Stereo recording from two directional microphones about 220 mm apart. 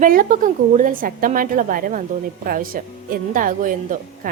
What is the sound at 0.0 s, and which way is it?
A woman's voice, 40° right (ahead or behind).